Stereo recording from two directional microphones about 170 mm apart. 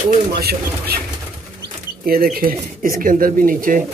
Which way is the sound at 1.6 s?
60° right (ahead or behind).